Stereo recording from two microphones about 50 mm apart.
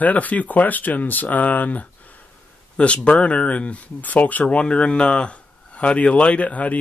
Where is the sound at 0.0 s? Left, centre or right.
Left.